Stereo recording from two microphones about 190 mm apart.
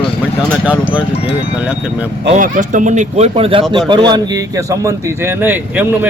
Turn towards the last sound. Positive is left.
turn(degrees=-10)  # may be behind; listen again after turning